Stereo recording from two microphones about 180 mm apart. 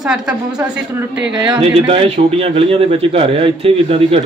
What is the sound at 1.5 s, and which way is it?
A man's voice, 30° right (ahead or behind).